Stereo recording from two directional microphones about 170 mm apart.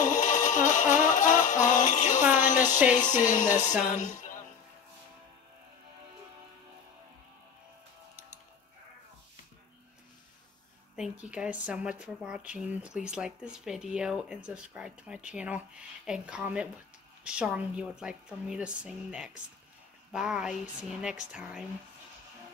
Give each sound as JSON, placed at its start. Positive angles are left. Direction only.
{"t": 0.0, "sound": "music", "side_deg": 45}
{"t": 2.3, "sound": "a sound", "side_deg": 50}
{"t": 2.9, "sound": "music", "side_deg": 45}
{"t": 11.0, "sound": "speech", "side_deg": -5}